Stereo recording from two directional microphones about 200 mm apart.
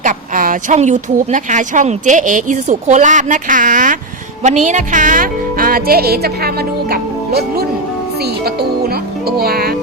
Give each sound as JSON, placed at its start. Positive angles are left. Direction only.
{"t": 0.0, "sound": "a woman's voice", "side_deg": -40}
{"t": 9.4, "sound": "speech", "side_deg": -50}